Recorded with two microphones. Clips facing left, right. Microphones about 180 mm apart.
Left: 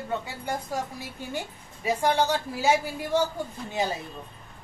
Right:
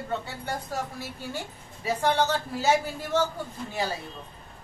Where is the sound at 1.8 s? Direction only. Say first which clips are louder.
Left 1 dB; 15° left (ahead or behind).